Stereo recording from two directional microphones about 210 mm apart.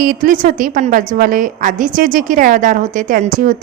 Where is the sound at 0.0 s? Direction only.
40° right (ahead or behind).